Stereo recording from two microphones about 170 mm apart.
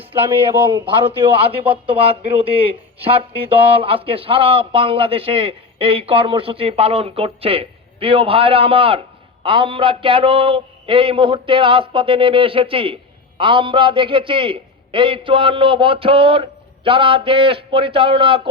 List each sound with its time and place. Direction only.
0.9 s a man's voice: 30° right (ahead or behind)